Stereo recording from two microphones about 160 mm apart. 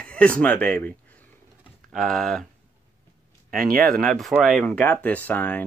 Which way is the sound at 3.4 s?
65° right (ahead or behind).